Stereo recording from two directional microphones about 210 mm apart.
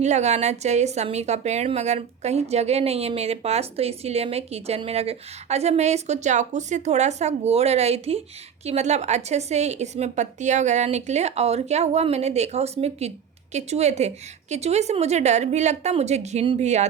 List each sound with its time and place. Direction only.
0.0 s a woman's voice: 35° right (ahead or behind)